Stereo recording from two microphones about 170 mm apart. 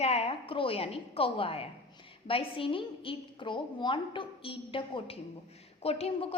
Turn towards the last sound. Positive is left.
turn(degrees=35)  # may be behind; listen again after turning